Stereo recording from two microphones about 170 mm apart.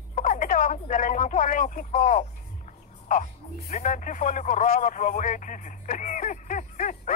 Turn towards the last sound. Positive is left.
turn(degrees=50)  # may be behind; listen again after turning